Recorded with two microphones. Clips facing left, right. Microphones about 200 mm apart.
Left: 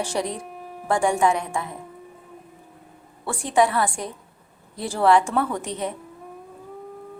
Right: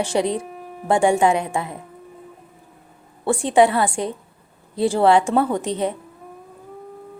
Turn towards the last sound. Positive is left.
turn(degrees=-30)  # may be behind; listen again after turning